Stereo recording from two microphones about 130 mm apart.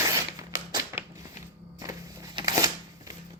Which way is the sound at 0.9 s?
20° right (ahead or behind).